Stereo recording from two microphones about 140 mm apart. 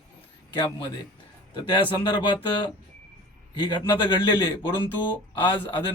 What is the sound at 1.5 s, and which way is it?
A man's voice, 35° left (ahead or behind).